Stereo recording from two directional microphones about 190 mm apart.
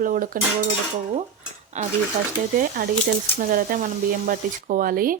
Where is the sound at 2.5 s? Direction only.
50° right (ahead or behind).